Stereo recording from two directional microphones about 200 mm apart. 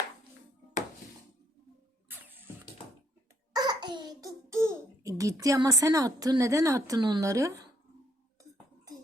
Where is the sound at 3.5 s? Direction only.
20° right (ahead or behind).